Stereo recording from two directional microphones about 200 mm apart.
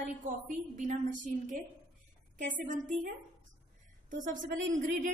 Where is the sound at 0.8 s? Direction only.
40° right (ahead or behind).